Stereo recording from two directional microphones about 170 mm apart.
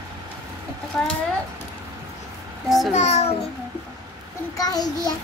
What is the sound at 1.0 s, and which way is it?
Speech, 5° left (ahead or behind).